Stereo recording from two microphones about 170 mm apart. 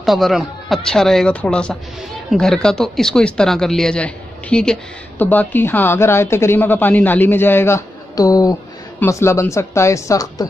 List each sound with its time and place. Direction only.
0.0 s a woman's voice: centre (ahead or behind); by 10.4 s 20° left (ahead or behind)